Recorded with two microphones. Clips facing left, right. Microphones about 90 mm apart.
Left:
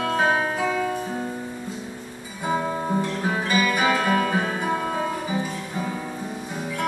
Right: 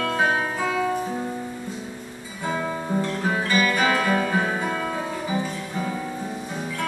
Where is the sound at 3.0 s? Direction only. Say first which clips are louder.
Even; 15° left (ahead or behind).